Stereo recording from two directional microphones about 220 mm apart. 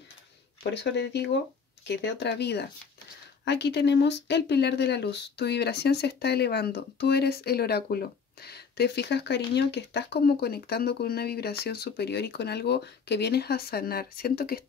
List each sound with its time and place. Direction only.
0.7 s speech: 50° left (ahead or behind)